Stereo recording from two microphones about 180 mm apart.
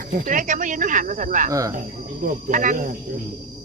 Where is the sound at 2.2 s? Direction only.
45° right (ahead or behind).